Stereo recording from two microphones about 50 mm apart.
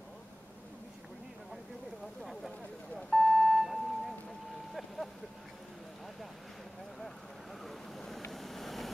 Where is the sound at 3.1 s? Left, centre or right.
Centre.